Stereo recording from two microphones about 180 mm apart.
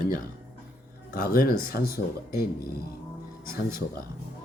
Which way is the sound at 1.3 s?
55° left (ahead or behind).